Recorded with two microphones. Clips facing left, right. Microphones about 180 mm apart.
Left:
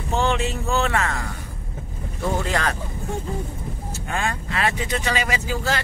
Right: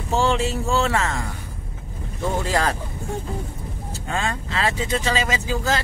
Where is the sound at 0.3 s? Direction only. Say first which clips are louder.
Right 2 dB; 25° right (ahead or behind).